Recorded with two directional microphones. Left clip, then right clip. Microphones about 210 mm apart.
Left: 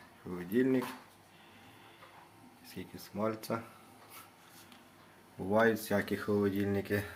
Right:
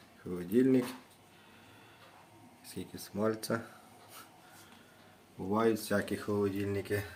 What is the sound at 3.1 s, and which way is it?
Speech, 20° right (ahead or behind).